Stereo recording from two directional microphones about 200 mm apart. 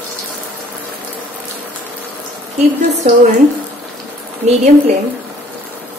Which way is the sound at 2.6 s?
35° right (ahead or behind).